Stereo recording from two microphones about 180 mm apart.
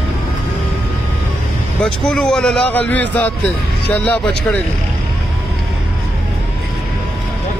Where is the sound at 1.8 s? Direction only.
5° left (ahead or behind).